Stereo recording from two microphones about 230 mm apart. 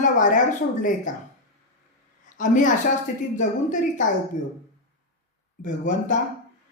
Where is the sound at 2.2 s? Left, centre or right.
Left.